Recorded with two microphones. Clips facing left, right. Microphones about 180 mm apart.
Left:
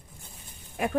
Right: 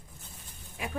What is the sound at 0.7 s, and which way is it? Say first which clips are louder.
Speech: left 9 dB; 55° left (ahead or behind).